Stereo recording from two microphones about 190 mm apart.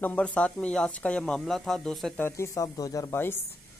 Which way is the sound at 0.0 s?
5° left (ahead or behind).